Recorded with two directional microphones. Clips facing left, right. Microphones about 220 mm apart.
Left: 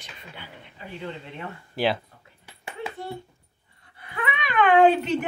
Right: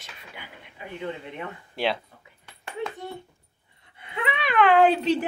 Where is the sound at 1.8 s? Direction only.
Centre (ahead or behind).